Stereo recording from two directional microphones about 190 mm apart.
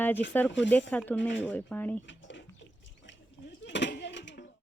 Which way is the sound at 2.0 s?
70° left (ahead or behind).